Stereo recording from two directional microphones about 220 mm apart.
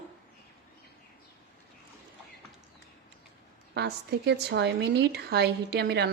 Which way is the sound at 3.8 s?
50° right (ahead or behind).